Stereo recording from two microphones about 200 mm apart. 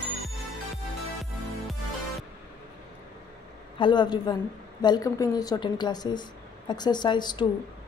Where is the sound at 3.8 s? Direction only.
20° left (ahead or behind).